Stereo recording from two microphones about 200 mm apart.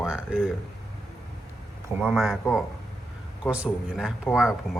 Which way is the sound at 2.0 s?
Centre (ahead or behind).